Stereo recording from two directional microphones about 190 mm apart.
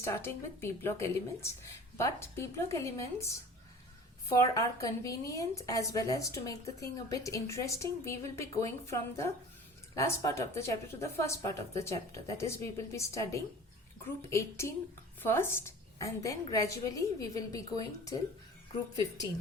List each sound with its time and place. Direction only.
0.0 s speech: 15° left (ahead or behind)
4.4 s speech: 15° left (ahead or behind)